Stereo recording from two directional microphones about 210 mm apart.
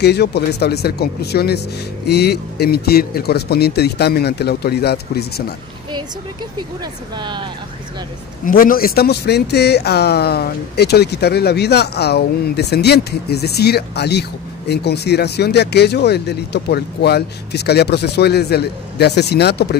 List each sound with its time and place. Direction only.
0.0 s speech: 50° left (ahead or behind)
7.2 s speech: 20° right (ahead or behind)
8.5 s speech: 40° left (ahead or behind)